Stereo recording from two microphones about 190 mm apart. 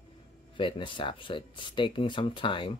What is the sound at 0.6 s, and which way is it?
Speech, 25° left (ahead or behind).